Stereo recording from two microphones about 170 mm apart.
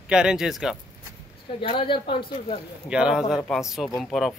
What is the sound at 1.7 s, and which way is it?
Speech, 30° left (ahead or behind).